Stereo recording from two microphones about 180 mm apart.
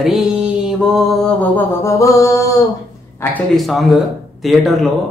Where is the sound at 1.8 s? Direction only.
20° left (ahead or behind).